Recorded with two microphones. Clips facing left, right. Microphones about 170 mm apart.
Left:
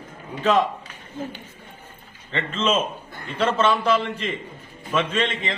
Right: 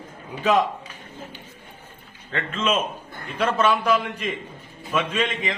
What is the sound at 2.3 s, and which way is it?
A man's voice, 5° right (ahead or behind).